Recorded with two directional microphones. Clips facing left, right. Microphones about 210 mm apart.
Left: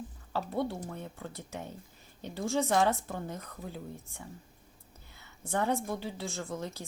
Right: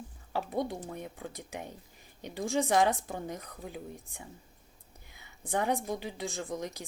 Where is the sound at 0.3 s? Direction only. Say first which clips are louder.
Even; 15° right (ahead or behind).